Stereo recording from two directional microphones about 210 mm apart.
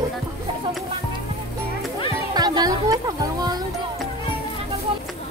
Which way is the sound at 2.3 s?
20° right (ahead or behind).